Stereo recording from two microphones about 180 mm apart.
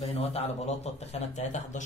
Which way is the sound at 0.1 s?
35° left (ahead or behind).